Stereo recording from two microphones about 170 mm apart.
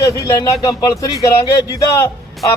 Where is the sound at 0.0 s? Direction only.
20° left (ahead or behind).